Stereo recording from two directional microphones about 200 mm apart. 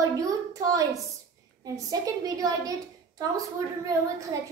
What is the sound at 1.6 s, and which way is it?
A woman's voice, 20° right (ahead or behind).